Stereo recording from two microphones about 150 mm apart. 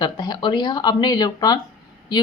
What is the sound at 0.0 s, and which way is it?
A woman's voice, 30° left (ahead or behind).